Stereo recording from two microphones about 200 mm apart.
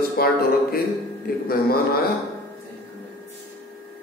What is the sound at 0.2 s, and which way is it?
Speech, 50° left (ahead or behind).